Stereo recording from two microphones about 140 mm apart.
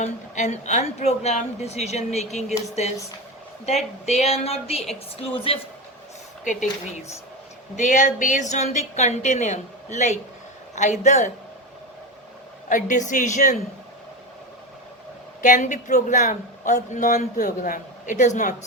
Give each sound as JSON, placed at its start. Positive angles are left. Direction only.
{"t": 0.0, "sound": "a woman's voice", "side_deg": 55}
{"t": 4.0, "sound": "a woman's voice", "side_deg": 50}
{"t": 6.4, "sound": "a woman's voice", "side_deg": 65}
{"t": 7.8, "sound": "speech", "side_deg": 60}
{"t": 12.6, "sound": "speech", "side_deg": 65}
{"t": 15.4, "sound": "speech", "side_deg": 65}